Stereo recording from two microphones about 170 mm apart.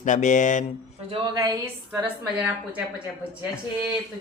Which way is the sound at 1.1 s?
25° right (ahead or behind).